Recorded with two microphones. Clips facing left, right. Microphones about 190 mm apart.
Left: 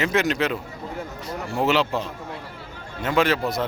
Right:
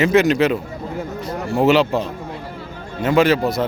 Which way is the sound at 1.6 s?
15° right (ahead or behind).